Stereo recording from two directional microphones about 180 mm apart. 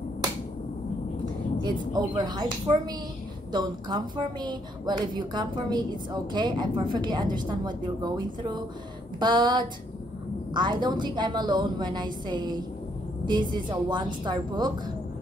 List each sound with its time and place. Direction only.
1.6 s a woman's voice: 25° right (ahead or behind)